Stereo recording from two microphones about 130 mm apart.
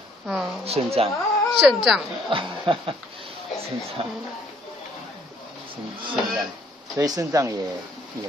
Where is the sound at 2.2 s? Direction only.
40° right (ahead or behind).